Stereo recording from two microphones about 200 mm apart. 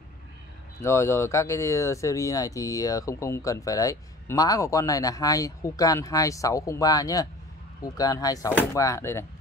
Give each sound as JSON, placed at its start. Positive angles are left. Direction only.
{"t": 0.7, "sound": "speech", "side_deg": 15}